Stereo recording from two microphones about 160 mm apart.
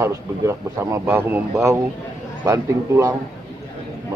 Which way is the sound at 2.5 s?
20° right (ahead or behind).